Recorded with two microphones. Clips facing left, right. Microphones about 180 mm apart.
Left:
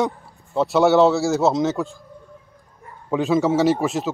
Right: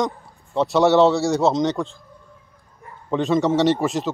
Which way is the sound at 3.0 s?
5° left (ahead or behind).